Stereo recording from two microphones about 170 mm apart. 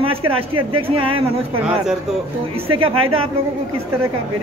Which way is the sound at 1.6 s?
5° right (ahead or behind).